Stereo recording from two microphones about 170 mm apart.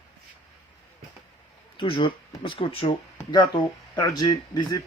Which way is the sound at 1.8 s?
30° left (ahead or behind).